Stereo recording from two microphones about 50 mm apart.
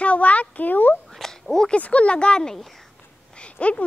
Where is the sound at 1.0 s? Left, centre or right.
Centre.